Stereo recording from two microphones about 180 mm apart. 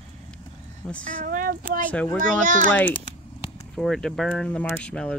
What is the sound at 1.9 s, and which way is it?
A child's voice, 10° left (ahead or behind).